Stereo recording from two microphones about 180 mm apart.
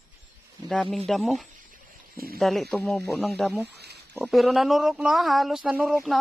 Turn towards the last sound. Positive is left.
turn(degrees=0)  # may be behind; listen again after turning